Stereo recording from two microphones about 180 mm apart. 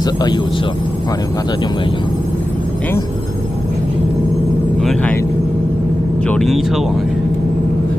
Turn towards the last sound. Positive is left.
turn(degrees=0)  # may be behind; listen again after turning